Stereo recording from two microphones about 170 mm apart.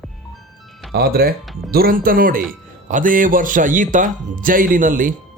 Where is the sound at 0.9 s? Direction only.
65° right (ahead or behind).